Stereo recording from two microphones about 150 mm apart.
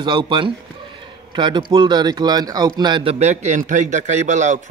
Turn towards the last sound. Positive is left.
turn(degrees=-55)  # may be behind; listen again after turning